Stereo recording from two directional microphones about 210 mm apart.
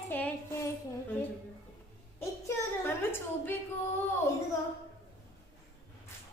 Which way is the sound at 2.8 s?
10° left (ahead or behind).